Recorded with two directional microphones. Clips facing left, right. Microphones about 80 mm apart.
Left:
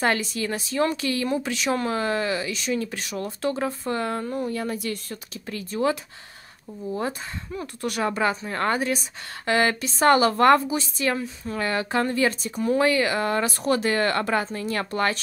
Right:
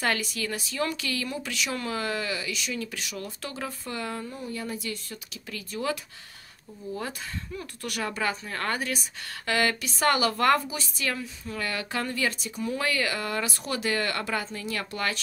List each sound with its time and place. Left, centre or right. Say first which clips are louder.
0.0 s speech: left 5 dB; left
4.3 s speech: left 7 dB; left
5.5 s speech: left 6 dB; left
7.0 s speech: left 6 dB; left
12.8 s speech: left 5 dB; left